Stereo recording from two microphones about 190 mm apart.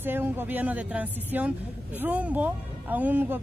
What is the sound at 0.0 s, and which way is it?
Speech, 10° right (ahead or behind).